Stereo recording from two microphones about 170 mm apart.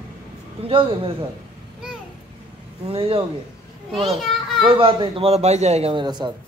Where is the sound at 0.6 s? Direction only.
35° right (ahead or behind).